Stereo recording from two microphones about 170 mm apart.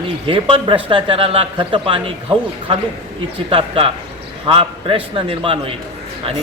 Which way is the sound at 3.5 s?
30° right (ahead or behind).